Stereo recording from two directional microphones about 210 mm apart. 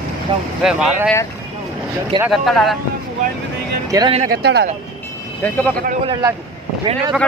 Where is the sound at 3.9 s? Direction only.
20° right (ahead or behind).